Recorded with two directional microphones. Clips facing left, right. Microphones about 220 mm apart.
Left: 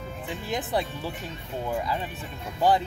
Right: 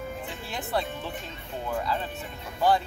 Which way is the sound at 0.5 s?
15° left (ahead or behind).